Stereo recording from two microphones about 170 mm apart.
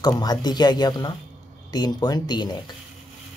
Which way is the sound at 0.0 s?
25° left (ahead or behind).